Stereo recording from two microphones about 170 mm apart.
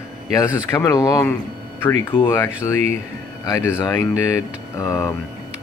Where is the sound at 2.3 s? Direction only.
15° left (ahead or behind).